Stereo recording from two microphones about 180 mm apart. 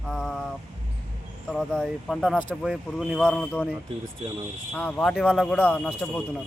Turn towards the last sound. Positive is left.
turn(degrees=5)  # may be behind; listen again after turning